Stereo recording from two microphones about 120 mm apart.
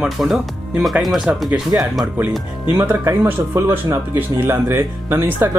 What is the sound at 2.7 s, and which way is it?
Speech, 20° right (ahead or behind).